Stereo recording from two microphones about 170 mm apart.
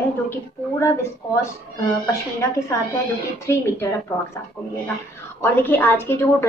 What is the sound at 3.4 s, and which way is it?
Speech, 15° left (ahead or behind).